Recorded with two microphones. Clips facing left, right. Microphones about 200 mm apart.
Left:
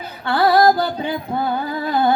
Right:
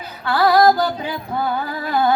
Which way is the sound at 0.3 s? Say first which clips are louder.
Even; 30° left (ahead or behind).